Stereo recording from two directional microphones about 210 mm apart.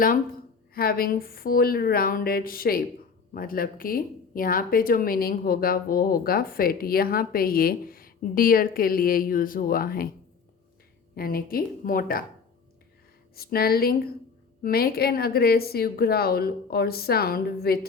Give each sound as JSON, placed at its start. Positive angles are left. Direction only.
{"t": 0.7, "sound": "speech", "side_deg": 45}
{"t": 11.1, "sound": "speech", "side_deg": 45}
{"t": 13.3, "sound": "speech", "side_deg": 45}